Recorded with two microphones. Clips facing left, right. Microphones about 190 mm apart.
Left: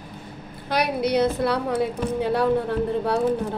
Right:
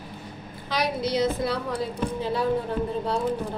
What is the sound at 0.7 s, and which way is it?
A woman's voice, 60° left (ahead or behind).